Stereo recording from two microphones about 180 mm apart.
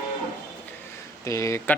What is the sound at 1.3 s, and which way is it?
Speech, 15° left (ahead or behind).